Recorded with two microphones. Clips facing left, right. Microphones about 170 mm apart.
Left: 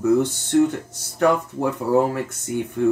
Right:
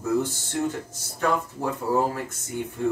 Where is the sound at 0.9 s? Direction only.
70° left (ahead or behind).